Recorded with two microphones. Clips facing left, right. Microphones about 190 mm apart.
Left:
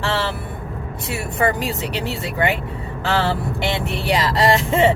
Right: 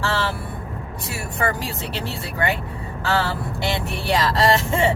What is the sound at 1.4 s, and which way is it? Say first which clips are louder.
Speech: left 4 dB; 20° left (ahead or behind).